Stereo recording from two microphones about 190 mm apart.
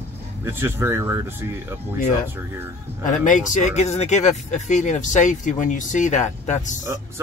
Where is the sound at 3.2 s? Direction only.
40° left (ahead or behind).